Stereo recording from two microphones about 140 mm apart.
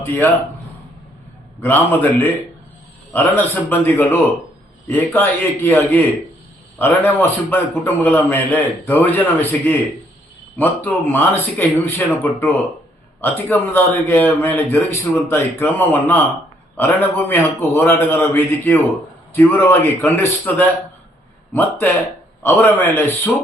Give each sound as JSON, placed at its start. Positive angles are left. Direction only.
{"t": 0.0, "sound": "a man's voice", "side_deg": 15}
{"t": 1.6, "sound": "a man's voice", "side_deg": 15}
{"t": 10.8, "sound": "a man's voice", "side_deg": 15}